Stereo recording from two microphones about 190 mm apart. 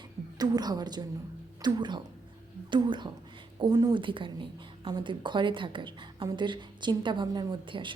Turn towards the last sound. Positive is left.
turn(degrees=-25)  # may be behind; listen again after turning